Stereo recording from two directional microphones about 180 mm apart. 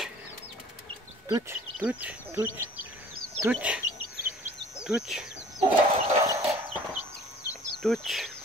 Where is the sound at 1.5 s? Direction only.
10° right (ahead or behind).